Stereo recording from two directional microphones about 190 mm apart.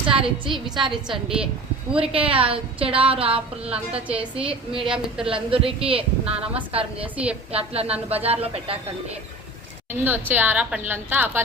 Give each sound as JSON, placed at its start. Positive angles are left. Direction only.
{"t": 0.1, "sound": "a woman's voice", "side_deg": -30}
{"t": 1.0, "sound": "a woman's voice", "side_deg": -5}
{"t": 2.0, "sound": "a woman's voice", "side_deg": -30}
{"t": 4.1, "sound": "a woman's voice", "side_deg": -5}
{"t": 4.4, "sound": "a woman's voice", "side_deg": -30}
{"t": 4.9, "sound": "a woman's voice", "side_deg": -5}
{"t": 5.3, "sound": "a woman's voice", "side_deg": -30}
{"t": 6.2, "sound": "a woman's voice", "side_deg": -5}
{"t": 7.5, "sound": "speech", "side_deg": -30}
{"t": 10.0, "sound": "a woman's voice", "side_deg": -10}